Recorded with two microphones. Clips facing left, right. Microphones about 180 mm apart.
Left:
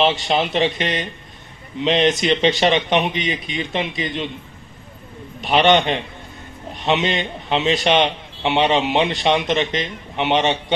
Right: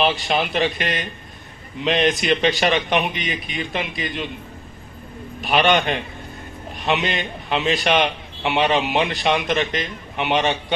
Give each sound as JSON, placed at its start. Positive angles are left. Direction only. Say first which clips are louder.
{"t": 0.3, "sound": "a man's voice", "louder": "left 2 dB", "side_deg": 25}
{"t": 5.4, "sound": "a man's voice", "louder": "left 3 dB", "side_deg": 25}